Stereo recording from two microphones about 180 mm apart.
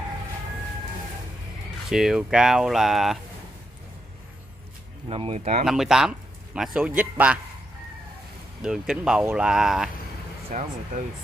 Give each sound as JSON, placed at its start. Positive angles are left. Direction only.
{"t": 1.9, "sound": "speech", "side_deg": 0}
{"t": 5.0, "sound": "speech", "side_deg": -35}
{"t": 5.7, "sound": "a man's voice", "side_deg": 0}
{"t": 8.6, "sound": "speech", "side_deg": -5}
{"t": 10.5, "sound": "speech", "side_deg": -45}